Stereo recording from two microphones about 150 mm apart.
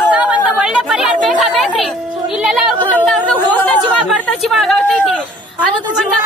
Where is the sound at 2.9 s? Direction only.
10° left (ahead or behind).